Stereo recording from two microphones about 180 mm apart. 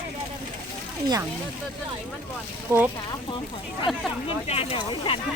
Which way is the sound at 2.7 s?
15° right (ahead or behind).